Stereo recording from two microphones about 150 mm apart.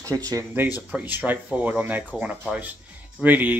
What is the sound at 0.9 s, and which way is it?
Speech, 10° right (ahead or behind).